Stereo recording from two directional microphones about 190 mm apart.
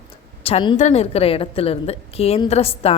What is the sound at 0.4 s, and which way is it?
A woman's voice, 30° left (ahead or behind).